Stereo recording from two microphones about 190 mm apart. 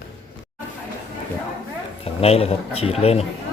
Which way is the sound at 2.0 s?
30° left (ahead or behind).